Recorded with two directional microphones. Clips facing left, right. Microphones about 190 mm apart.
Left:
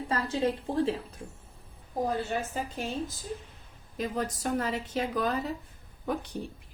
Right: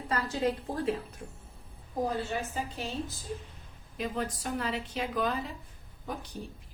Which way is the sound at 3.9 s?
40° left (ahead or behind).